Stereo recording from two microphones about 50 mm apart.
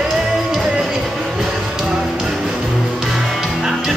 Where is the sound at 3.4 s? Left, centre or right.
Centre.